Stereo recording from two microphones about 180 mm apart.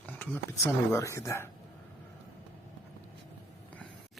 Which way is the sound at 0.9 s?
15° left (ahead or behind).